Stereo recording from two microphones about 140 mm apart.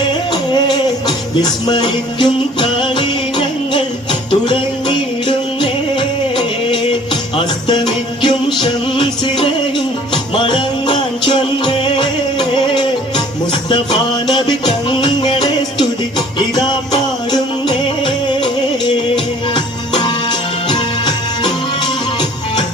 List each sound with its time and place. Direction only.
0.3 s music: 30° left (ahead or behind)
14.3 s music: 30° left (ahead or behind)